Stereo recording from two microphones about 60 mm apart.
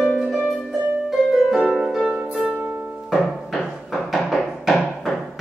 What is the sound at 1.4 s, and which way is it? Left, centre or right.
Harp, centre.